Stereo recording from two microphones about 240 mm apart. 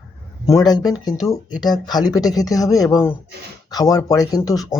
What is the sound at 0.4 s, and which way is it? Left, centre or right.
Speech, centre.